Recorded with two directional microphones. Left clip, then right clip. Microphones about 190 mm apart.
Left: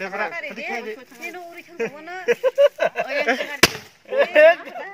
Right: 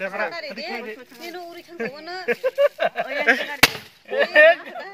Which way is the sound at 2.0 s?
60° right (ahead or behind).